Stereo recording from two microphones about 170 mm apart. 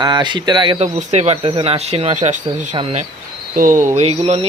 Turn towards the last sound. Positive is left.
turn(degrees=-35)  # may be behind; listen again after turning